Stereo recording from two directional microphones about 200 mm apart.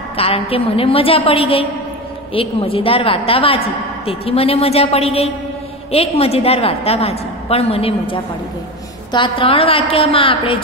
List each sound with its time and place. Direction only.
0.2 s a woman's voice: 30° left (ahead or behind)